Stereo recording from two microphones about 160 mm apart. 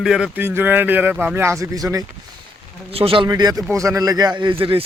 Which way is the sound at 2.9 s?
35° right (ahead or behind).